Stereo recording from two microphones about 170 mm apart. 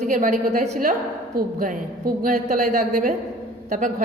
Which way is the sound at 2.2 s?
50° right (ahead or behind).